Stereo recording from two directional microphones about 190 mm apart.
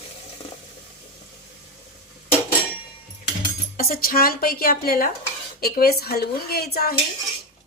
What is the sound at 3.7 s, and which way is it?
A woman's voice, 50° left (ahead or behind).